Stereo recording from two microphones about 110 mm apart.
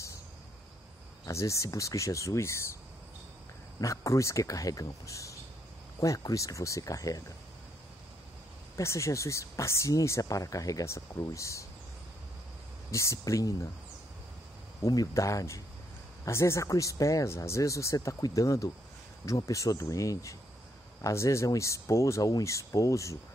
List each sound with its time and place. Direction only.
1.2 s speech: 30° left (ahead or behind)
3.8 s speech: 30° left (ahead or behind)
8.7 s speech: 25° left (ahead or behind)
12.9 s speech: 25° left (ahead or behind)
14.8 s speech: 30° left (ahead or behind)